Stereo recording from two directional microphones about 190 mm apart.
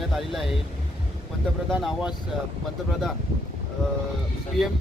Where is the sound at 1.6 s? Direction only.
5° right (ahead or behind).